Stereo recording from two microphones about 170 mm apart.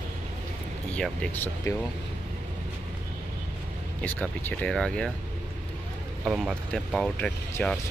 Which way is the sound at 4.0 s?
10° left (ahead or behind).